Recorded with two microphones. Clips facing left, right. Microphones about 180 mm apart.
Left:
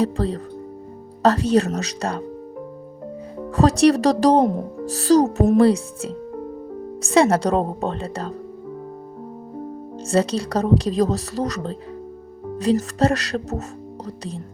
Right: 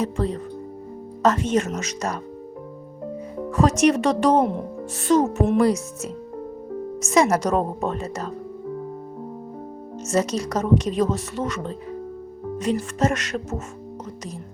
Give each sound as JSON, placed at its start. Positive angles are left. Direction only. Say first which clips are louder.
{"t": 0.0, "sound": "speech", "louder": "left 3 dB", "side_deg": 35}
{"t": 3.5, "sound": "speech", "louder": "left 3 dB", "side_deg": 35}
{"t": 10.1, "sound": "speech", "louder": "left 2 dB", "side_deg": 30}